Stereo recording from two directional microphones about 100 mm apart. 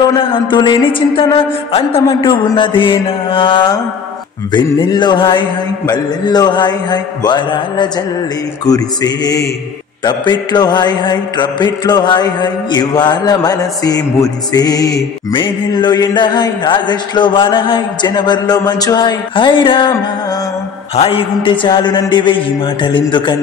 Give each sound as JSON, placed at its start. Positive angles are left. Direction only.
{"t": 0.1, "sound": "music", "side_deg": 60}
{"t": 2.2, "sound": "music", "side_deg": 55}
{"t": 4.5, "sound": "mantra", "side_deg": 50}
{"t": 8.6, "sound": "mantra", "side_deg": 40}
{"t": 15.3, "sound": "mantra", "side_deg": 50}
{"t": 20.9, "sound": "music", "side_deg": 70}